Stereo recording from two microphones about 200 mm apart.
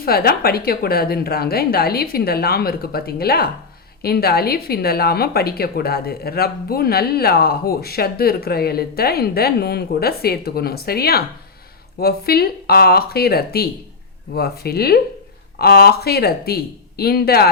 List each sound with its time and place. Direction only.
0.0 s a woman's voice: 50° left (ahead or behind)